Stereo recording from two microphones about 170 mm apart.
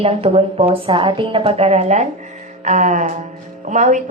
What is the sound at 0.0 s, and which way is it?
A woman's voice, 35° right (ahead or behind).